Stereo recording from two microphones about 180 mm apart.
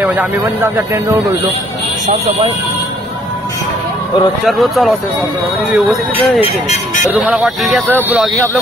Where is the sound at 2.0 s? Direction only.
35° right (ahead or behind).